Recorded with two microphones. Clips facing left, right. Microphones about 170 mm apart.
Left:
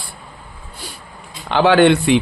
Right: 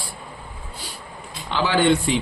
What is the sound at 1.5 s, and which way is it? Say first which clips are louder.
Speech: left 7 dB; 70° left (ahead or behind).